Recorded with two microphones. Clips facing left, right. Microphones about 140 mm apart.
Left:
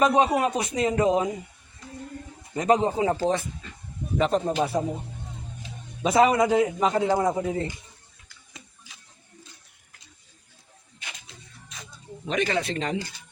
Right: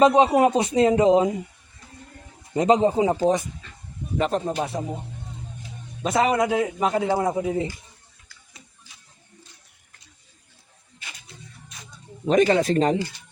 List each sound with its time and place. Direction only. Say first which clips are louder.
0.0 s speech: right 5 dB; 25° right (ahead or behind)
2.6 s speech: right 3 dB; 20° right (ahead or behind)
4.2 s a man's voice: left 1 dB; 5° right (ahead or behind)
6.0 s a man's voice: left 1 dB; centre (ahead or behind)
8.9 s a sound: left 2 dB; 10° left (ahead or behind)
11.3 s music: right 3 dB; 90° left
12.3 s speech: right 8 dB; 40° right (ahead or behind)